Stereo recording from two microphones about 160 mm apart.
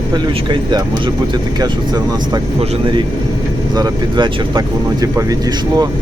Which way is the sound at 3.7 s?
25° right (ahead or behind).